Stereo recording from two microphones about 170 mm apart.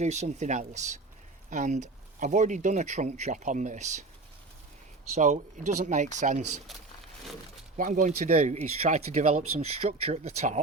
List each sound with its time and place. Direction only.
0.0 s speech: 40° right (ahead or behind)
5.1 s speech: 45° right (ahead or behind)
7.8 s speech: 50° right (ahead or behind)